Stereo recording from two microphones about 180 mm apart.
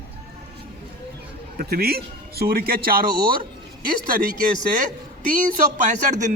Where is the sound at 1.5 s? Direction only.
60° right (ahead or behind).